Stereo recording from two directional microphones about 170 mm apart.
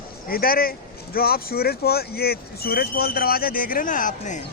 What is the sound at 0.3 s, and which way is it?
Speech, 60° left (ahead or behind).